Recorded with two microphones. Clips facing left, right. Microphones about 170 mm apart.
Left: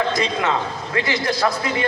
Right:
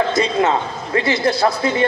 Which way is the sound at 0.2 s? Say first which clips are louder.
Right 4 dB; 35° right (ahead or behind).